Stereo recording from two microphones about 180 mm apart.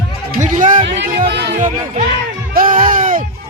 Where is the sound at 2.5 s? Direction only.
50° right (ahead or behind).